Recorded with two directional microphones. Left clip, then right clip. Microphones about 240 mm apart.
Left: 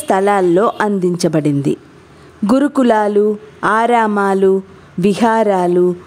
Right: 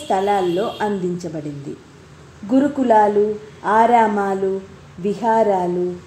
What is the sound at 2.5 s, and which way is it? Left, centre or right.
Speech, left.